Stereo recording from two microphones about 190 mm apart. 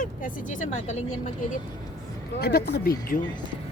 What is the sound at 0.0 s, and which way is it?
Speech, 40° left (ahead or behind).